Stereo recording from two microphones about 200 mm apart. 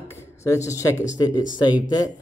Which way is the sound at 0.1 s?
15° left (ahead or behind).